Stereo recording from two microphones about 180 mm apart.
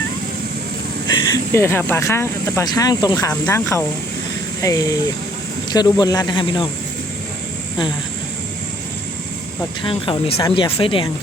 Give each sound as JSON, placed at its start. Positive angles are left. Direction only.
{"t": 1.1, "sound": "speech", "side_deg": 25}
{"t": 9.8, "sound": "speech", "side_deg": 30}